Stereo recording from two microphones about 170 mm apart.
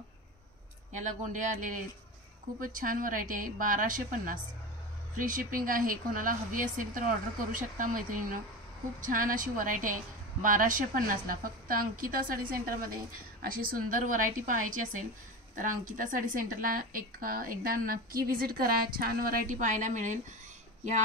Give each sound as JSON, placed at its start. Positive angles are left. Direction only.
{"t": 0.9, "sound": "a woman's voice", "side_deg": -45}